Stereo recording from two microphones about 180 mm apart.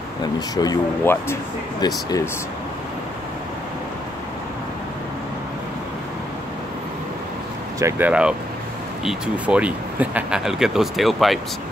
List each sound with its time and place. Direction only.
0.2 s speech: 20° left (ahead or behind)
7.8 s speech: 10° right (ahead or behind)